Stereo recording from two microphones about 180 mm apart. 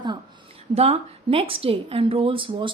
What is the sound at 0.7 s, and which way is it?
A woman's voice, 35° right (ahead or behind).